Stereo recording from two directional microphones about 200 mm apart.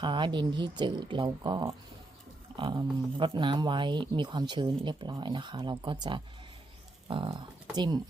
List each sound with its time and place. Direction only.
0.0 s speech: 25° right (ahead or behind)